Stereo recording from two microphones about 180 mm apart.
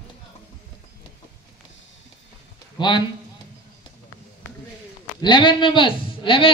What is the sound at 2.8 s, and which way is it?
Speech, 25° left (ahead or behind).